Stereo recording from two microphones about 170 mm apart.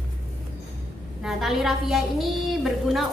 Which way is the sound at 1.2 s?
Centre (ahead or behind).